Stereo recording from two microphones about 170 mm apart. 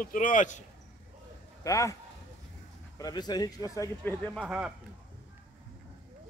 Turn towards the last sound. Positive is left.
turn(degrees=-5)  # may be behind; listen again after turning